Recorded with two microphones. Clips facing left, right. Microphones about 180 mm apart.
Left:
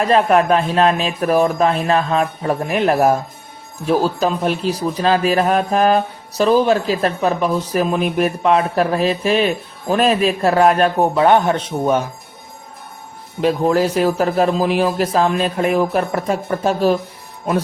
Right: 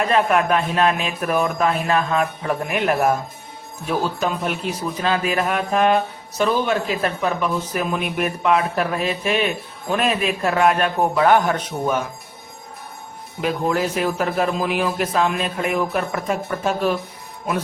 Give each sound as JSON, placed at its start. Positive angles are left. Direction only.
{"t": 0.0, "sound": "a man's voice", "side_deg": 30}
{"t": 13.4, "sound": "a man's voice", "side_deg": 35}